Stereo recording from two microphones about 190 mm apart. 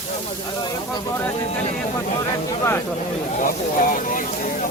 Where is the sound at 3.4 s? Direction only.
45° left (ahead or behind).